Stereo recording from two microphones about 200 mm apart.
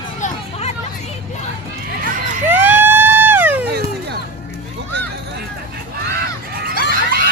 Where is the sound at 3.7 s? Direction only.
55° right (ahead or behind).